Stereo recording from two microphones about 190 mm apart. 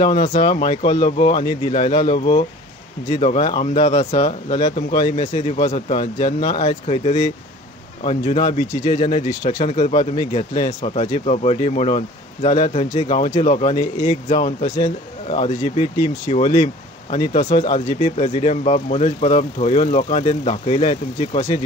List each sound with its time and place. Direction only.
0.2 s speech: 40° left (ahead or behind)
0.8 s speech: 25° left (ahead or behind)